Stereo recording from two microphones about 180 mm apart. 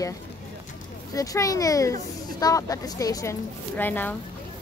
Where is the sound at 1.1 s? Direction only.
20° left (ahead or behind).